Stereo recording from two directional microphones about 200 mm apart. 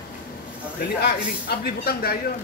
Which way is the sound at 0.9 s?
55° left (ahead or behind).